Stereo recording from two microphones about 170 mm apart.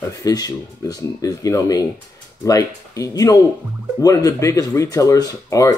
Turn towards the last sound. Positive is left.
turn(degrees=20)  # may be behind; listen again after turning